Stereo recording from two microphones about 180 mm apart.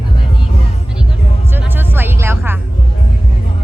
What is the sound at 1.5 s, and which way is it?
Music, 10° right (ahead or behind).